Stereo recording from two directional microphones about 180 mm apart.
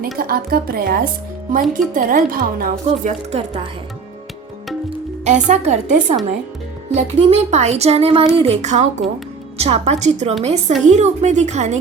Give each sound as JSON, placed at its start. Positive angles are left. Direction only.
{"t": 0.0, "sound": "a woman's voice", "side_deg": -55}
{"t": 3.3, "sound": "speech", "side_deg": -35}
{"t": 5.2, "sound": "speech", "side_deg": -40}